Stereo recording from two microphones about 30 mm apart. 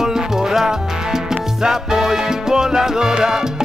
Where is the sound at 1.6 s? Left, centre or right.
Centre.